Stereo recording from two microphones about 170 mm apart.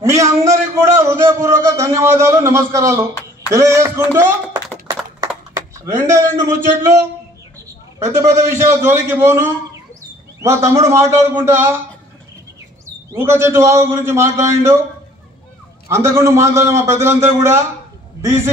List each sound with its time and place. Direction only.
0.0 s a sound: 20° right (ahead or behind)
3.4 s speech: 20° right (ahead or behind)
5.9 s a man's voice: 15° right (ahead or behind)
8.0 s a man's voice: 15° right (ahead or behind)
13.1 s a man's voice: 15° right (ahead or behind)
15.9 s a man's voice: 15° right (ahead or behind)